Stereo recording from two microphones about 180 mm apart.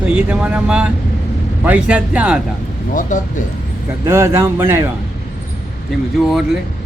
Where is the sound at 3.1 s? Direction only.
45° left (ahead or behind).